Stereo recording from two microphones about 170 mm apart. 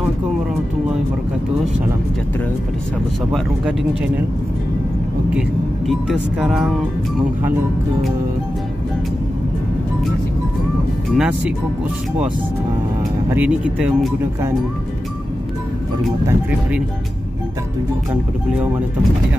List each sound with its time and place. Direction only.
3.3 s speech: 5° right (ahead or behind)
5.9 s speech: centre (ahead or behind)
11.1 s speech: 5° right (ahead or behind)
13.3 s speech: 10° right (ahead or behind)
16.0 s speech: 5° right (ahead or behind)
18.1 s speech: 10° right (ahead or behind)